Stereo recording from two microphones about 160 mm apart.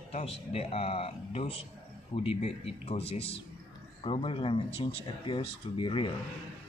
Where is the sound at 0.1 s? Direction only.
40° left (ahead or behind).